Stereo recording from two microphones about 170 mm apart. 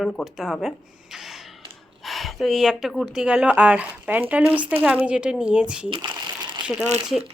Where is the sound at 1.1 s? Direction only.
Centre (ahead or behind).